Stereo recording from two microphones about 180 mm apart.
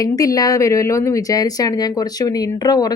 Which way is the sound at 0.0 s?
20° left (ahead or behind).